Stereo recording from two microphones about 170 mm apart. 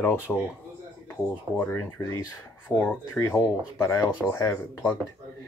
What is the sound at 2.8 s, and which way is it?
Speech, 20° left (ahead or behind).